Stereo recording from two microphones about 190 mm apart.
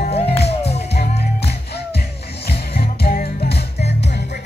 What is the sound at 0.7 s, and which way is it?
Music, 60° left (ahead or behind).